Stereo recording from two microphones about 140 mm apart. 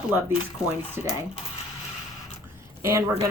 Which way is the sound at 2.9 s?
20° right (ahead or behind).